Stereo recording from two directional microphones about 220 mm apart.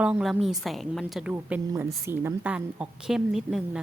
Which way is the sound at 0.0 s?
5° right (ahead or behind).